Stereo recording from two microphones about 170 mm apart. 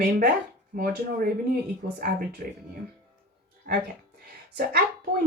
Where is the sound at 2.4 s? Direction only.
55° right (ahead or behind).